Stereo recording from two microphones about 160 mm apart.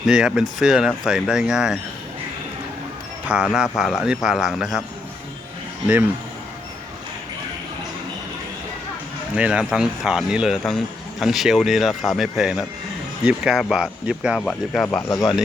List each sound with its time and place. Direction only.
0.1 s speech: 5° right (ahead or behind)
3.2 s speech: 5° right (ahead or behind)
9.3 s speech: 5° right (ahead or behind)
15.1 s speech: 25° left (ahead or behind)